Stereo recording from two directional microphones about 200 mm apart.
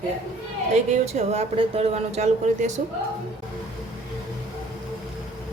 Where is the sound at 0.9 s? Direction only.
35° right (ahead or behind).